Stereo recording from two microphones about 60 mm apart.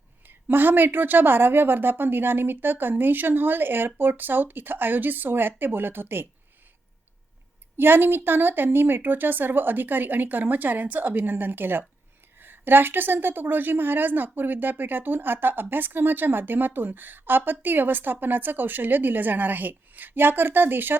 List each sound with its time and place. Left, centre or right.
0.3 s speech: right
7.8 s speech: right